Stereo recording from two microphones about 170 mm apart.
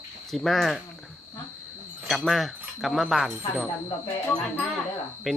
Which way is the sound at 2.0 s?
Centre (ahead or behind).